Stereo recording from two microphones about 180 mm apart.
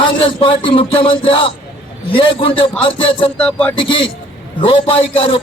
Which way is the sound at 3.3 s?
5° left (ahead or behind).